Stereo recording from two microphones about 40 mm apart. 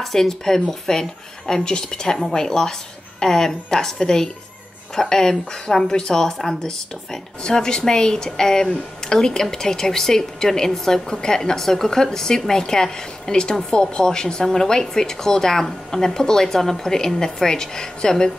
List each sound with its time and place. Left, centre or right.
0.0 s a woman's voice: centre